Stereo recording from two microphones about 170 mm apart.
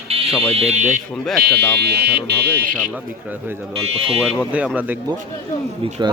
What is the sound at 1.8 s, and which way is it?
Speech, 70° right (ahead or behind).